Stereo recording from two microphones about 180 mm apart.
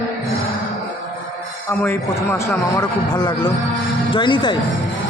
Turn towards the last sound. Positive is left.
turn(degrees=25)  # may be behind; listen again after turning